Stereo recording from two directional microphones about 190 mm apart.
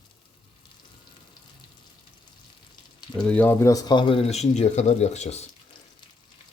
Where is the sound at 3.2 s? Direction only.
5° left (ahead or behind); by 5.5 s 35° left (ahead or behind).